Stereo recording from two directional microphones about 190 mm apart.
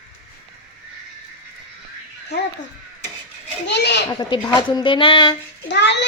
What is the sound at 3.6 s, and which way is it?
Children playing, 65° left (ahead or behind).